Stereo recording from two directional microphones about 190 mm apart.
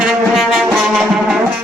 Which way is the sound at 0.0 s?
Centre (ahead or behind).